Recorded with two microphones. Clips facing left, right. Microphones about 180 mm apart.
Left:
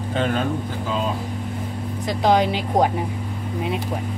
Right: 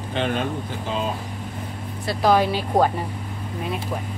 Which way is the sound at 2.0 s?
20° left (ahead or behind).